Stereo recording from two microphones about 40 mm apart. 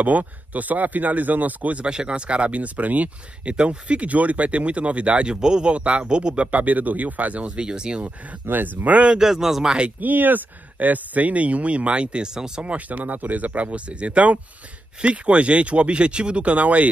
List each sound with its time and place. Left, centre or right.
0.0 s speech: right
1.9 s speech: right
3.4 s speech: right
7.6 s speech: right
8.5 s speech: right
8.8 s speech: right
9.1 s speech: centre
9.8 s speech: right
12.6 s speech: right